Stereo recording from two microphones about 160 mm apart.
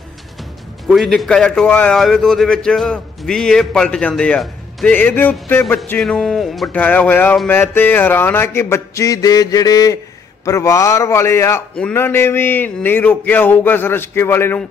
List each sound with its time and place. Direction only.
0.8 s a man's voice: centre (ahead or behind)